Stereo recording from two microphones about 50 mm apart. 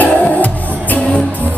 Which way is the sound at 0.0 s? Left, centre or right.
Left.